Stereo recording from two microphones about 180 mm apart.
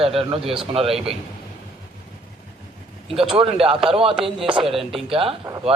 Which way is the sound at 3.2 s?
30° right (ahead or behind).